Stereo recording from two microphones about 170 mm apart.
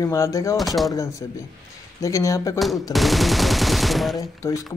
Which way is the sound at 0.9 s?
20° left (ahead or behind).